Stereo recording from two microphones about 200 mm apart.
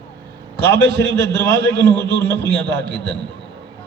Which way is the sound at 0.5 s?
55° right (ahead or behind).